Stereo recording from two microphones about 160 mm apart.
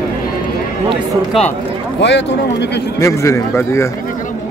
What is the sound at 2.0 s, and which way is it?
Speech, 90° left.